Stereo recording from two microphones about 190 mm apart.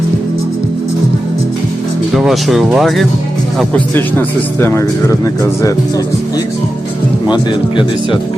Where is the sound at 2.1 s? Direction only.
Centre (ahead or behind).